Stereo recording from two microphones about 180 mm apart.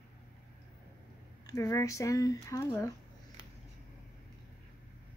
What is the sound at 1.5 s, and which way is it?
Speech, 15° left (ahead or behind).